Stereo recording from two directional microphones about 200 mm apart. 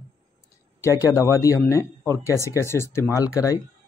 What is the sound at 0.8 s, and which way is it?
Speech, 15° left (ahead or behind).